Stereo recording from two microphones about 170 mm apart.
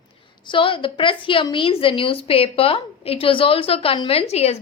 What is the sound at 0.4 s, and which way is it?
A woman's voice, 30° left (ahead or behind).